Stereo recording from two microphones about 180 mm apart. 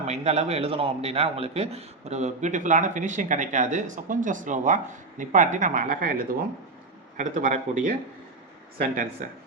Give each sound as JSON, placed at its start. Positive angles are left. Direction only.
{"t": 0.0, "sound": "a man's voice", "side_deg": -35}
{"t": 9.2, "sound": "a man's voice", "side_deg": -45}